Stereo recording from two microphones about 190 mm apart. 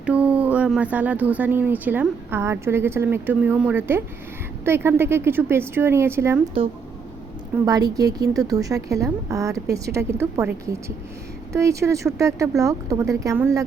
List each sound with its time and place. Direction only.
0.0 s speech: 5° right (ahead or behind)
7.6 s speech: 20° right (ahead or behind)